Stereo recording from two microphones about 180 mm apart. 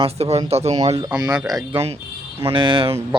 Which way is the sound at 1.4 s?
20° right (ahead or behind).